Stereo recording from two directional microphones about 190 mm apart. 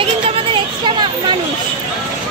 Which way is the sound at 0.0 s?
30° right (ahead or behind).